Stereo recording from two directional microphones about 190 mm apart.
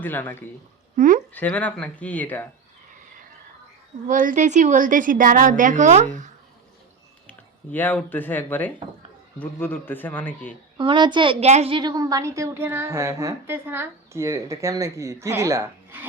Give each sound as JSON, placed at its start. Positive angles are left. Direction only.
{"t": 0.0, "sound": "speech", "side_deg": 10}
{"t": 0.9, "sound": "a sound", "side_deg": -45}
{"t": 1.3, "sound": "speech", "side_deg": 10}
{"t": 4.0, "sound": "a woman's voice", "side_deg": -45}
{"t": 7.3, "sound": "speech", "side_deg": 10}
{"t": 10.8, "sound": "a child's voice", "side_deg": -25}